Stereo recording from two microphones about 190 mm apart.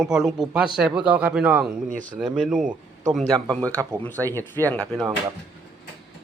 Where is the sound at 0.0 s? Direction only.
Centre (ahead or behind).